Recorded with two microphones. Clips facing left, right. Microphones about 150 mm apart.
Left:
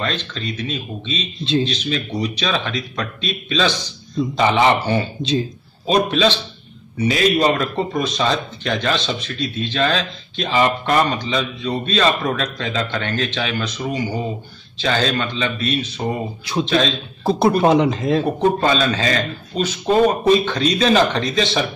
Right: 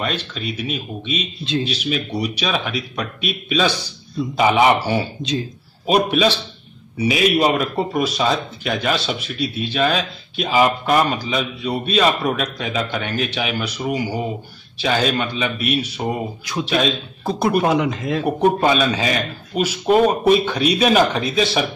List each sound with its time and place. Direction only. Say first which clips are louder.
0.0 s speech: even; 10° right (ahead or behind)
17.2 s speech: left 3 dB; 30° left (ahead or behind)
18.2 s speech: right 6 dB; 10° right (ahead or behind)